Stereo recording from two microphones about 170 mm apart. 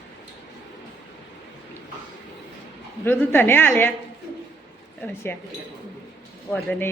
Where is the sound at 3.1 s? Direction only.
10° left (ahead or behind).